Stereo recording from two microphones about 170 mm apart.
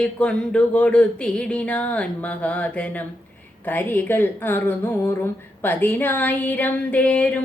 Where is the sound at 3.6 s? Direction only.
10° left (ahead or behind).